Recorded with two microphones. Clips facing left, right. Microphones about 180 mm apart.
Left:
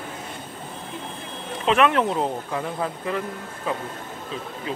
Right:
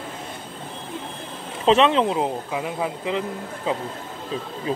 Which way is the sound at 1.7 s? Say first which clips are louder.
Right 2 dB; 25° right (ahead or behind).